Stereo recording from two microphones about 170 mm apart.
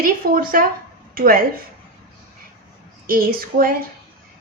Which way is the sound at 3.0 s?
60° right (ahead or behind).